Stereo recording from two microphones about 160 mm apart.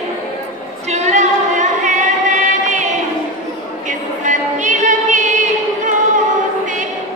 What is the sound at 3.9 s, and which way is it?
Music, 50° right (ahead or behind).